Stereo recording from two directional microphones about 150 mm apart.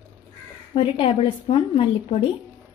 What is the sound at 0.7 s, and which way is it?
A woman's voice, 35° left (ahead or behind).